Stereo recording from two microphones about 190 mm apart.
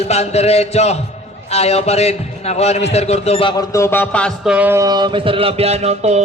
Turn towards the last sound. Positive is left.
turn(degrees=-35)  # may be behind; listen again after turning